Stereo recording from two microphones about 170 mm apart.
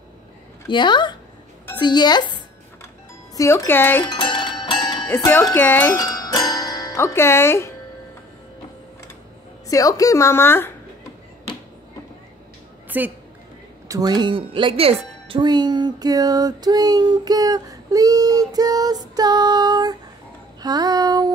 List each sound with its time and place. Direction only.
0.7 s speech: 25° left (ahead or behind)
3.3 s speech: 15° left (ahead or behind)
4.0 s music: 25° left (ahead or behind)
5.1 s speech: 15° left (ahead or behind)
5.9 s music: 20° left (ahead or behind)
9.7 s speech: 20° left (ahead or behind)
12.9 s a woman's voice: 10° right (ahead or behind)
13.8 s speech: 20° right (ahead or behind)